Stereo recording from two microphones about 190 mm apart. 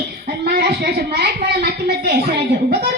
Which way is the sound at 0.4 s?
60° right (ahead or behind).